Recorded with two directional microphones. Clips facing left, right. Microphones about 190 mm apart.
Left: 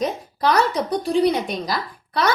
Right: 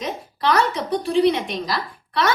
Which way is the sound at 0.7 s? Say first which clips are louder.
Left 1 dB; 40° left (ahead or behind).